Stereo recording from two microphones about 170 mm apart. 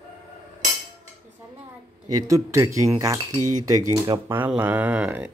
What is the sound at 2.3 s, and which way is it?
Speech, 20° right (ahead or behind).